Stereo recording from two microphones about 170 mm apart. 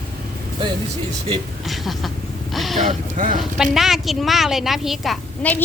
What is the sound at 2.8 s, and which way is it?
Speech, 50° right (ahead or behind).